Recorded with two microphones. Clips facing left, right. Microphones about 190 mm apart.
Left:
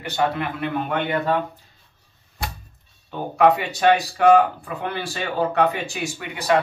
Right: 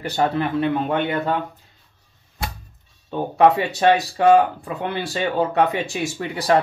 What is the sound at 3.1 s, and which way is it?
Speech, 25° right (ahead or behind).